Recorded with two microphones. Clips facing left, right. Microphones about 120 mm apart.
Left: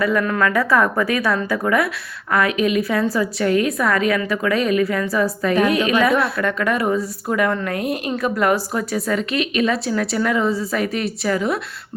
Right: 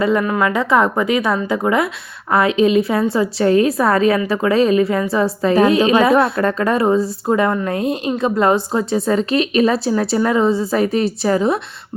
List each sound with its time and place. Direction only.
0.0 s a woman's voice: 25° right (ahead or behind)